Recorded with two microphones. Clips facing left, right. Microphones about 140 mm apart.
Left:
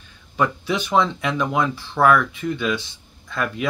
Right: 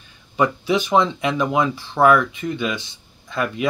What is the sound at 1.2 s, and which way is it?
Speech, 20° right (ahead or behind).